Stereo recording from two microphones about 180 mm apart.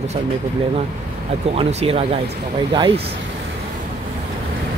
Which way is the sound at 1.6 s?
35° right (ahead or behind).